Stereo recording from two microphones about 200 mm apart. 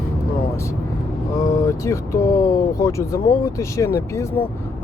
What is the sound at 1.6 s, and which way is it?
Speech, 15° left (ahead or behind).